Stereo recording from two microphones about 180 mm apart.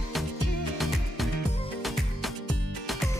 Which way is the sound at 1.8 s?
Centre (ahead or behind).